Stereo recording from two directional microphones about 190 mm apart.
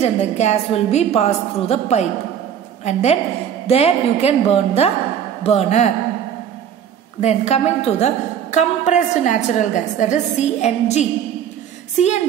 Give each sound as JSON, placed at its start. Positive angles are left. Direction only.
{"t": 0.0, "sound": "a woman's voice", "side_deg": 35}
{"t": 7.2, "sound": "a woman's voice", "side_deg": 35}